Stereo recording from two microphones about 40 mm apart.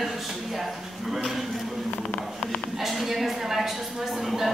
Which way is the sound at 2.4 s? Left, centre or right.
Centre.